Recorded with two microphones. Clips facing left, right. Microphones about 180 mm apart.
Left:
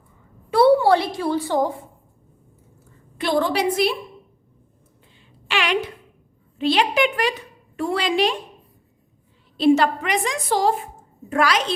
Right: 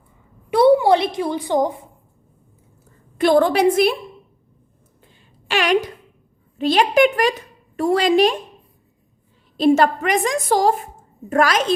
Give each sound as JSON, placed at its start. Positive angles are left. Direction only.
{"t": 0.5, "sound": "a woman's voice", "side_deg": -15}
{"t": 3.2, "sound": "a woman's voice", "side_deg": -50}
{"t": 5.5, "sound": "a woman's voice", "side_deg": -40}
{"t": 9.6, "sound": "a woman's voice", "side_deg": -45}